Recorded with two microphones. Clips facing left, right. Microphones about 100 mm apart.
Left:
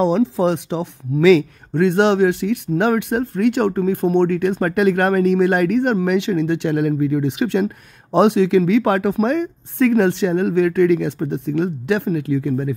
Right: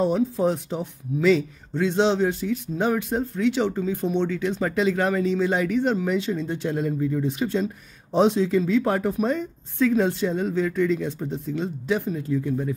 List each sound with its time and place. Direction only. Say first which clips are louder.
0.0 s speech: left 5 dB; 90° left; by 12.7 s 70° left (ahead or behind)